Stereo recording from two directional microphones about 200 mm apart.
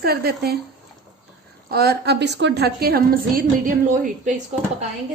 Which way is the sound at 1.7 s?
50° right (ahead or behind).